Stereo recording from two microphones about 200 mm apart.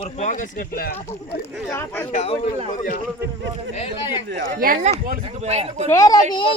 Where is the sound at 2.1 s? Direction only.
30° left (ahead or behind).